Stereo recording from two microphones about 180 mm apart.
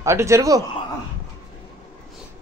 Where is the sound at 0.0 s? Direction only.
15° right (ahead or behind).